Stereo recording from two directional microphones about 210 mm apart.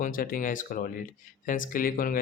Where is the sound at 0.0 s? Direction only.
40° left (ahead or behind).